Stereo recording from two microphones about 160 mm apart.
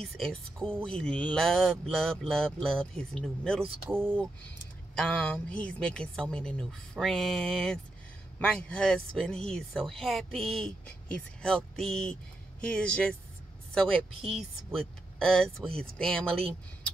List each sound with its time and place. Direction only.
0.0 s speech: 5° left (ahead or behind)
3.9 s speech: 15° right (ahead or behind)
4.9 s speech: 5° left (ahead or behind)
14.7 s speech: centre (ahead or behind)